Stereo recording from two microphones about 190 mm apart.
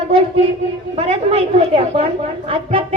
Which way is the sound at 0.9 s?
30° right (ahead or behind).